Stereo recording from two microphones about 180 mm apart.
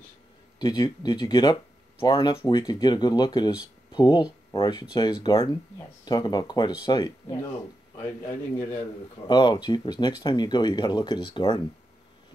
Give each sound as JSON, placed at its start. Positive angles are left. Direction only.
{"t": 0.6, "sound": "speech", "side_deg": 25}
{"t": 9.3, "sound": "speech", "side_deg": 25}